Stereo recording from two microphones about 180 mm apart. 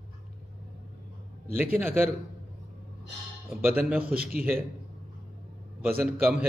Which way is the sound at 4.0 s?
55° right (ahead or behind).